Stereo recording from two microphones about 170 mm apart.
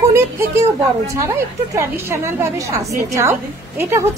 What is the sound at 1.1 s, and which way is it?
A woman's voice, 20° right (ahead or behind).